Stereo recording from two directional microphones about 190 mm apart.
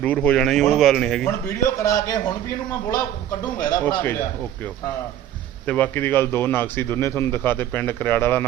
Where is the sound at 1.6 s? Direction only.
20° left (ahead or behind).